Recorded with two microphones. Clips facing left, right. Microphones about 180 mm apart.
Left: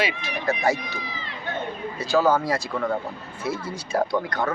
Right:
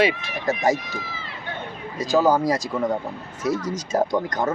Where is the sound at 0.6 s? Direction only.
40° right (ahead or behind).